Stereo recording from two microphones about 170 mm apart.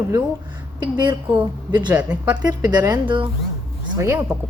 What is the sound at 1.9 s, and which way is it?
Speech, 10° right (ahead or behind).